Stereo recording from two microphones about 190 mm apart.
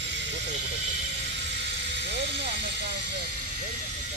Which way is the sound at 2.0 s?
65° right (ahead or behind).